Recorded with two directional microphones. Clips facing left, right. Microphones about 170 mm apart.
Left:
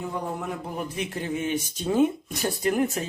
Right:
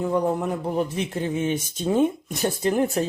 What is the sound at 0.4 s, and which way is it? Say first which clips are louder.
Speech: right 7 dB; 25° right (ahead or behind).